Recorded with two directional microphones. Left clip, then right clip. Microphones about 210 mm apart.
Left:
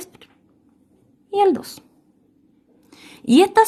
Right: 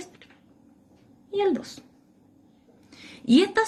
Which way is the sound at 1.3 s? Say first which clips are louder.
Left 8 dB; 55° left (ahead or behind).